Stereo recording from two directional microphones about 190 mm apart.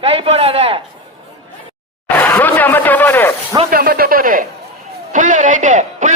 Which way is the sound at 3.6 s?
50° right (ahead or behind).